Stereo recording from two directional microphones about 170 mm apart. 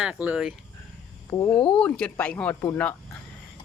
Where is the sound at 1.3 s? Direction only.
25° left (ahead or behind).